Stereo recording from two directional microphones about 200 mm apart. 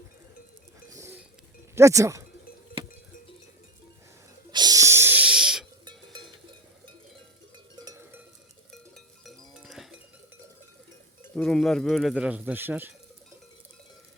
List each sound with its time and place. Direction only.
0.8 s chink: 15° right (ahead or behind)
1.7 s speech: 15° right (ahead or behind)
4.5 s wheeze: 20° right (ahead or behind); by 5.6 s 5° right (ahead or behind)
7.5 s cowbell: 20° right (ahead or behind)
8.7 s cowbell: centre (ahead or behind)
11.2 s speech: 5° left (ahead or behind)